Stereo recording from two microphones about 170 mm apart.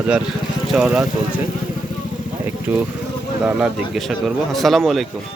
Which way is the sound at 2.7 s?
5° right (ahead or behind).